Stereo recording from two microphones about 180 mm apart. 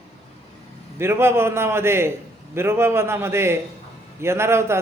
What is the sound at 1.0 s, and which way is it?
A man's voice, 15° right (ahead or behind).